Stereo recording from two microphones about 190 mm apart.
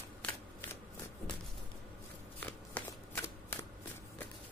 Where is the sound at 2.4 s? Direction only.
10° left (ahead or behind).